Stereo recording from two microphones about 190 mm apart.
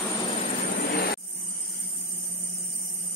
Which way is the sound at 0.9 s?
55° left (ahead or behind).